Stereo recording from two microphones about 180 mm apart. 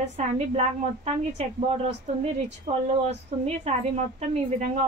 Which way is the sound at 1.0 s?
40° right (ahead or behind).